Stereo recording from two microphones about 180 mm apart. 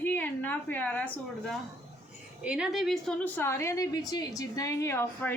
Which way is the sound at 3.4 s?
15° left (ahead or behind).